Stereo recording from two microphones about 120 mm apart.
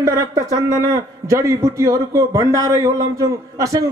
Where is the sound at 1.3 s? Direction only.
25° right (ahead or behind).